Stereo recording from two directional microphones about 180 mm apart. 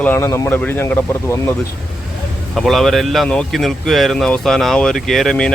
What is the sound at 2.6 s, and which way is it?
Speech, centre (ahead or behind).